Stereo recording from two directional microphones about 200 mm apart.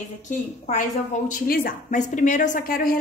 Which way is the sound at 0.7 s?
40° left (ahead or behind).